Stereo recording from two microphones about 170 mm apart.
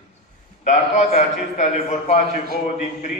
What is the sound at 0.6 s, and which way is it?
A man's voice, 40° left (ahead or behind).